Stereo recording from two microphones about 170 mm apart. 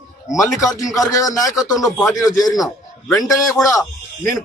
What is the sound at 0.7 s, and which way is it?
Speech, 20° left (ahead or behind).